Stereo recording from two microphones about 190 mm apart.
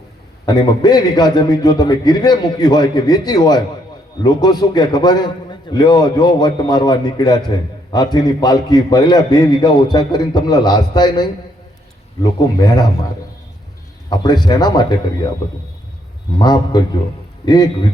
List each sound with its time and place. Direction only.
0.4 s a man's voice: 20° left (ahead or behind)
12.5 s a man's voice: 20° left (ahead or behind)
14.1 s a man's voice: 20° left (ahead or behind)
16.4 s a man's voice: 20° left (ahead or behind)